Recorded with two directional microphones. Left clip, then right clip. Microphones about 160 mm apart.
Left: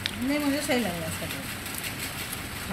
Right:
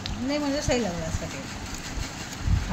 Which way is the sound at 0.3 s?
40° right (ahead or behind).